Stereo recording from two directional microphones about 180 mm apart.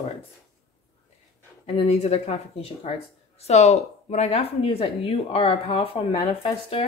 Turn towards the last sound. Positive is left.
turn(degrees=30)  # may be behind; listen again after turning